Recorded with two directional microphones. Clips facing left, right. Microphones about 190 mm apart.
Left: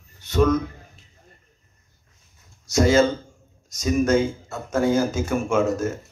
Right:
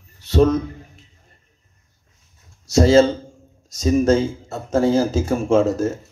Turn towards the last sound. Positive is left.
turn(degrees=-30)  # may be behind; listen again after turning